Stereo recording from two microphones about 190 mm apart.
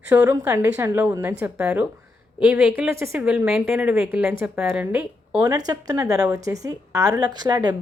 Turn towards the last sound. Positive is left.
turn(degrees=-20)  # may be behind; listen again after turning